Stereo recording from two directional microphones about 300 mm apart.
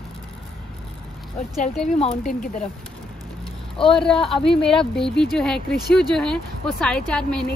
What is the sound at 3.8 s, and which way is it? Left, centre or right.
Speech, centre.